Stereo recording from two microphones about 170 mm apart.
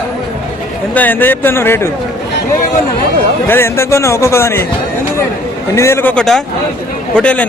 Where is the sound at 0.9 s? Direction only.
10° left (ahead or behind).